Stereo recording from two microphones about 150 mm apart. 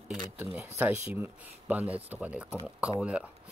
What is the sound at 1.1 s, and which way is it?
Speech, 10° right (ahead or behind).